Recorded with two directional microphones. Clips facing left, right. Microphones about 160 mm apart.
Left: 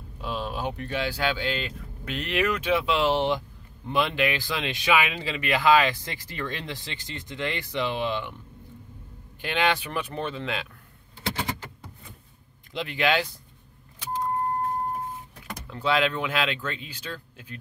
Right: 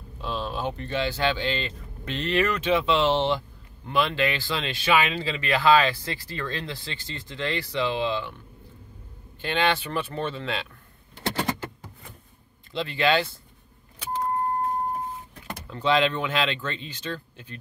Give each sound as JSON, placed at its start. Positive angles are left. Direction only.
{"t": 0.2, "sound": "speech", "side_deg": 10}
{"t": 9.4, "sound": "speech", "side_deg": 10}
{"t": 12.7, "sound": "speech", "side_deg": 15}
{"t": 15.6, "sound": "speech", "side_deg": 5}